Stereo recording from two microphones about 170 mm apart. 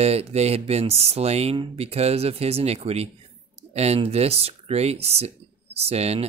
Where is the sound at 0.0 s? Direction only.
35° right (ahead or behind).